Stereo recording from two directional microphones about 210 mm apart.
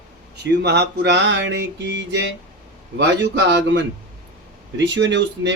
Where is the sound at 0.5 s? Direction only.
50° right (ahead or behind).